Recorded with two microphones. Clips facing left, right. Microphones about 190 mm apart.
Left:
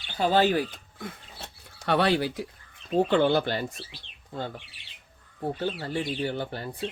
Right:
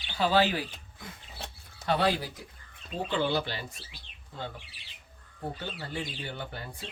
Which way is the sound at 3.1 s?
55° left (ahead or behind).